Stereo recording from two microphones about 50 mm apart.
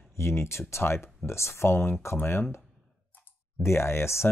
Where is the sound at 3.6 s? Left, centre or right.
Left.